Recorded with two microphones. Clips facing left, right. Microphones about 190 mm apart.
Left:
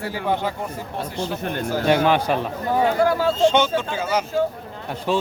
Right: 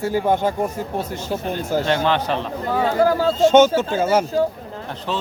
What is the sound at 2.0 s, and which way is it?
Speech, 10° left (ahead or behind).